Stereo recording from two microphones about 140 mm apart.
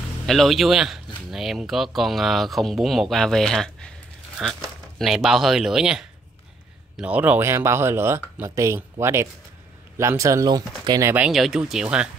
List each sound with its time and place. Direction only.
0.3 s speech: centre (ahead or behind); by 11.1 s 20° right (ahead or behind)
11.1 s speech: 5° right (ahead or behind)